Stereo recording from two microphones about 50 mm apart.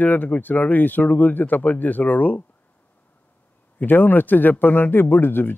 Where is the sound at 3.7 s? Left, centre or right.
Left.